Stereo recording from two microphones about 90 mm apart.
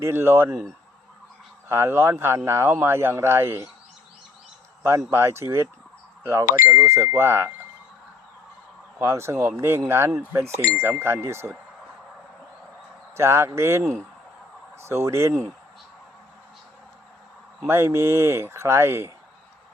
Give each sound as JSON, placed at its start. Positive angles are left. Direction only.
{"t": 0.0, "sound": "speech", "side_deg": -25}
{"t": 1.7, "sound": "speech", "side_deg": -25}
{"t": 4.8, "sound": "speech", "side_deg": -25}
{"t": 9.0, "sound": "speech", "side_deg": -30}
{"t": 13.1, "sound": "speech", "side_deg": -30}
{"t": 17.7, "sound": "speech", "side_deg": -30}